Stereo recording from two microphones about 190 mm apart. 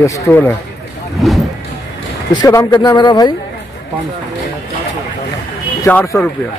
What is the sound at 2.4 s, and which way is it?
Speech, 20° left (ahead or behind).